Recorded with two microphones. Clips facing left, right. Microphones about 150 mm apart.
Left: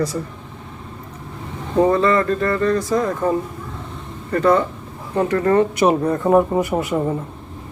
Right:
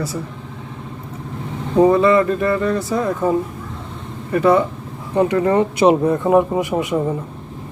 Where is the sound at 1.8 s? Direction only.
10° right (ahead or behind).